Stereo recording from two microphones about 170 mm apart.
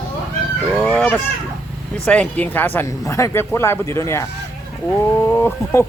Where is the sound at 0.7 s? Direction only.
5° left (ahead or behind).